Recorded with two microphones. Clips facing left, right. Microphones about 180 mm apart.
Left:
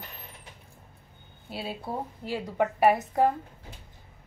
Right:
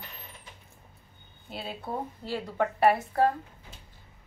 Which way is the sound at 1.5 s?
5° left (ahead or behind).